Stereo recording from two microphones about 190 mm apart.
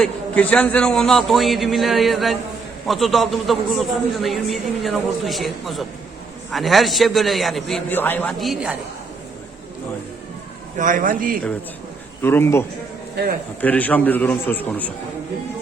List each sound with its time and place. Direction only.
0.0 s a man's voice: 5° left (ahead or behind)
10.8 s a man's voice: 45° right (ahead or behind)
12.2 s a man's voice: 10° left (ahead or behind)